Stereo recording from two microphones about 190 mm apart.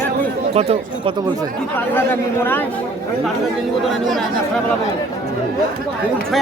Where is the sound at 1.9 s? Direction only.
10° left (ahead or behind).